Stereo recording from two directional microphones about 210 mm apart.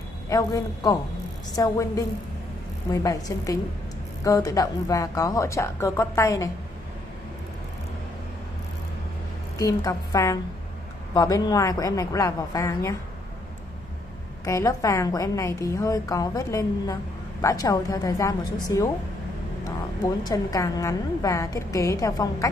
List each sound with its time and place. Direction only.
0.3 s a woman's voice: 15° left (ahead or behind)
9.6 s a woman's voice: 15° left (ahead or behind)
14.4 s a woman's voice: 15° left (ahead or behind)
20.2 s a woman's voice: 15° left (ahead or behind)